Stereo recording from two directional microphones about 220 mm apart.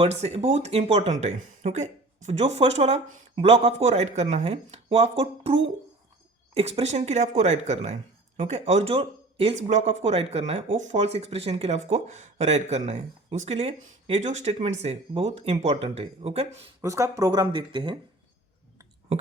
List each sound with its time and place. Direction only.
0.0 s speech: 30° right (ahead or behind)
16.8 s speech: 15° right (ahead or behind)